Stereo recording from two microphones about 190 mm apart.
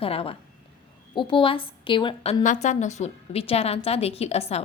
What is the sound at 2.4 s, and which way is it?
A woman's voice, 40° left (ahead or behind).